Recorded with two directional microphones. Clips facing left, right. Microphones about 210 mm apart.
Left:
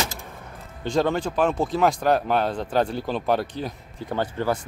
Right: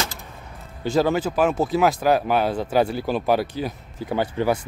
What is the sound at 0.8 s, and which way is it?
Speech, 5° right (ahead or behind).